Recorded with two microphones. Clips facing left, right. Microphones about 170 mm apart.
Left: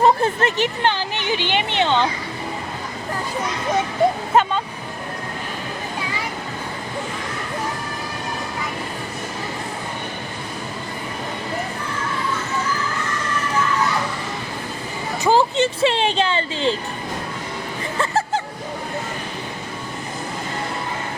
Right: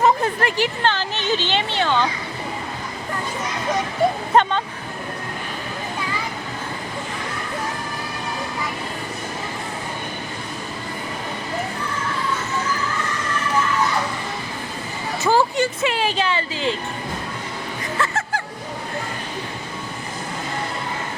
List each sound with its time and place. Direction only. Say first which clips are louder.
0.0 s speech: left 2 dB; 25° left (ahead or behind)
4.3 s speech: right 1 dB; 5° left (ahead or behind)
15.2 s speech: left 2 dB; 15° left (ahead or behind)
17.9 s music: left 3 dB; 30° left (ahead or behind)